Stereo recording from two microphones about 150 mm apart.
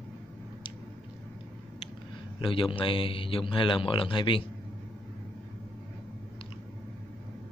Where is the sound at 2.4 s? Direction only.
35° left (ahead or behind).